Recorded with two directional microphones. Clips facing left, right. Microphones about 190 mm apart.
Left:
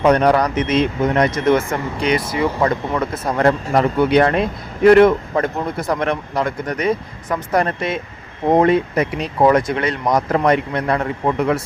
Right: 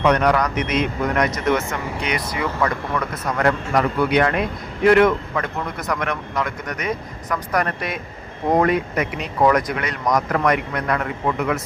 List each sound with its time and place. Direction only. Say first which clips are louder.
0.0 s a man's voice: left 4 dB; 30° left (ahead or behind)